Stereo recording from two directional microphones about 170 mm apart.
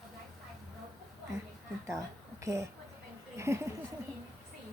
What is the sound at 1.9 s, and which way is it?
A woman's voice, 20° right (ahead or behind).